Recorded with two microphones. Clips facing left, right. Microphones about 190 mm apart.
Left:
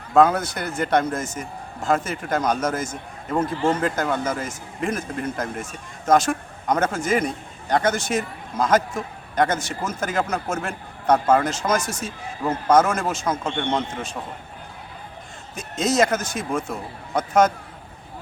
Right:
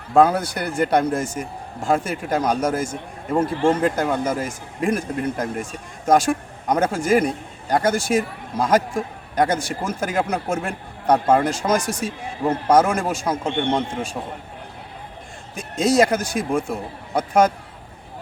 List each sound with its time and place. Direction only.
0.1 s a man's voice: 10° right (ahead or behind)
6.1 s a man's voice: 15° right (ahead or behind)
12.0 s speech: 30° right (ahead or behind)
12.6 s a man's voice: 10° right (ahead or behind)
15.5 s a man's voice: 10° right (ahead or behind)